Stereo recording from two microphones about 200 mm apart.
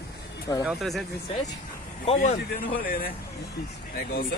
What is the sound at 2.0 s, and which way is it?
Speech, 40° left (ahead or behind).